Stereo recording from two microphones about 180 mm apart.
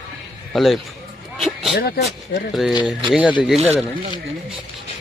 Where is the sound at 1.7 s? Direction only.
60° left (ahead or behind).